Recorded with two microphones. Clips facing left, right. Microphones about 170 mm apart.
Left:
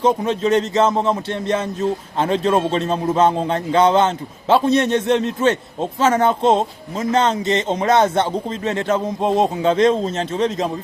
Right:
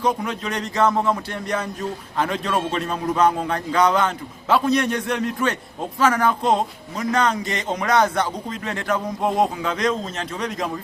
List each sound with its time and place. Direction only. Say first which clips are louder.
0.0 s speech: left 6 dB; 25° left (ahead or behind)